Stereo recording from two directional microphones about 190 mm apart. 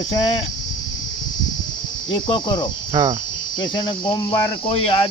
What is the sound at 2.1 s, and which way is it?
Speech, 25° left (ahead or behind).